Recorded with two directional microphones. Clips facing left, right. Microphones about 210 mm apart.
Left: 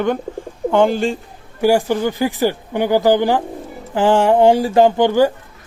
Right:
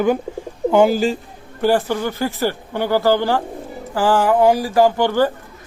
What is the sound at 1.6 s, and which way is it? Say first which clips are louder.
Speech: left 3 dB; 10° left (ahead or behind).